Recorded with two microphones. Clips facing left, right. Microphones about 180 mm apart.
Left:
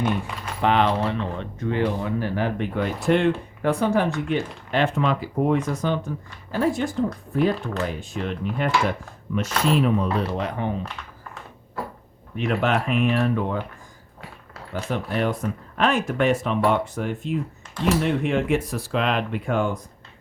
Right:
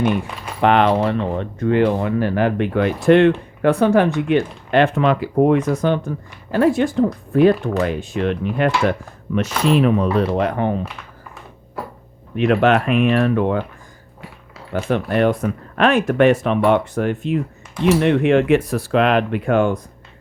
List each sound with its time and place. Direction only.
0.6 s speech: 65° right (ahead or behind)
12.4 s speech: 75° right (ahead or behind)
14.7 s speech: 65° right (ahead or behind)